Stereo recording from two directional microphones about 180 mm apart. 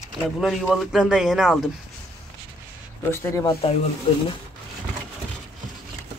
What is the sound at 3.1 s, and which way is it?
Speech, 15° left (ahead or behind).